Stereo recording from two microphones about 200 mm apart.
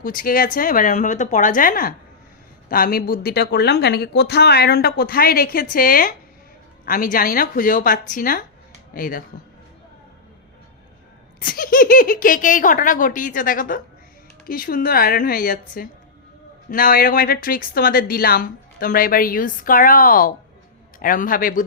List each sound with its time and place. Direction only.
0.0 s speech: 45° left (ahead or behind)
11.3 s speech: 45° left (ahead or behind)